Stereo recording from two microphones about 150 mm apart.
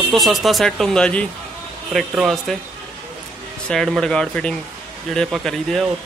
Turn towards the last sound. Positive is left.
turn(degrees=0)  # may be behind; listen again after turning